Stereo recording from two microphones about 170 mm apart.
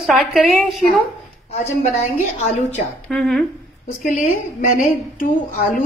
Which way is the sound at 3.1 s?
Centre (ahead or behind).